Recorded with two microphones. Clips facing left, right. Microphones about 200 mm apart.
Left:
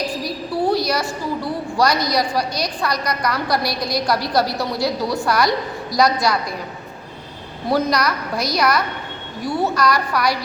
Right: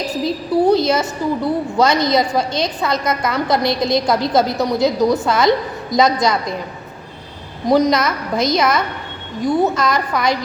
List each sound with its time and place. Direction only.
0.2 s a sound: 20° right (ahead or behind)
1.7 s a woman's voice: 25° right (ahead or behind)
7.7 s a woman's voice: 20° right (ahead or behind)